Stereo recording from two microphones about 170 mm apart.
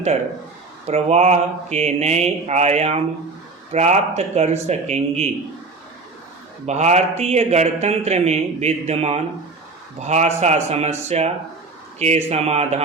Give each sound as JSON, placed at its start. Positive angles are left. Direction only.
{"t": 0.9, "sound": "speech", "side_deg": -40}
{"t": 6.7, "sound": "speech", "side_deg": -40}